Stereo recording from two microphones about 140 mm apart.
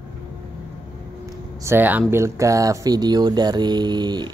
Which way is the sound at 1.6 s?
15° right (ahead or behind).